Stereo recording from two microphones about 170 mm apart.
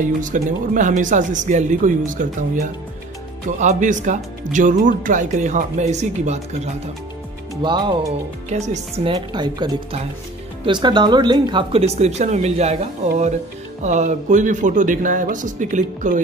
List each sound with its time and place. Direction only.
0.2 s speech: 50° right (ahead or behind)
7.6 s a woman's voice: 25° right (ahead or behind)
8.5 s speech: 40° right (ahead or behind)
9.0 s a woman's voice: 25° right (ahead or behind); by 16.2 s 50° right (ahead or behind)